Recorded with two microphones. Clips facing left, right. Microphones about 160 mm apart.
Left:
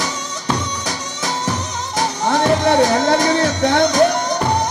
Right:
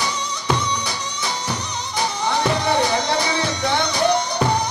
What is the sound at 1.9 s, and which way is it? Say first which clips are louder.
Music: left 4 dB; 40° left (ahead or behind).